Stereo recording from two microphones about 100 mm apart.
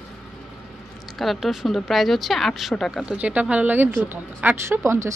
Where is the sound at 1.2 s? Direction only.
Centre (ahead or behind).